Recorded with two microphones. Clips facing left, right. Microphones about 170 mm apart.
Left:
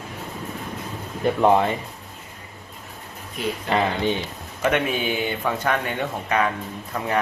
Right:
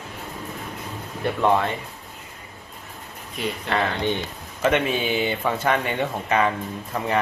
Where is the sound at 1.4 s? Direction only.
25° left (ahead or behind).